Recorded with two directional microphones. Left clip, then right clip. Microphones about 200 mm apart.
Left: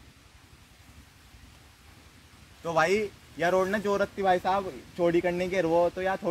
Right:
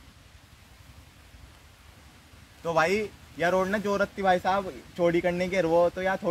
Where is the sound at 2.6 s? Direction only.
Centre (ahead or behind).